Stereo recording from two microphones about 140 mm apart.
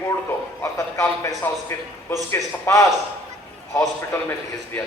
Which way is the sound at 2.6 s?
20° left (ahead or behind).